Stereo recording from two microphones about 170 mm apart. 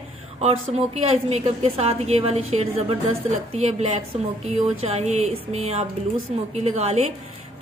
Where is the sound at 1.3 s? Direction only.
40° right (ahead or behind).